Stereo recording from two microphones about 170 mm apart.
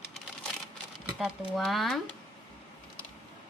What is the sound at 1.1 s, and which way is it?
Speech, centre (ahead or behind).